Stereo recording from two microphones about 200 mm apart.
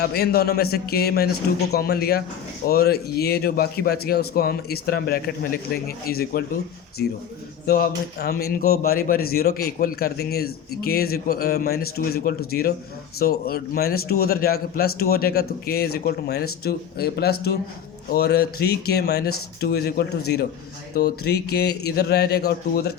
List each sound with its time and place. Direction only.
0.0 s speech: 50° left (ahead or behind)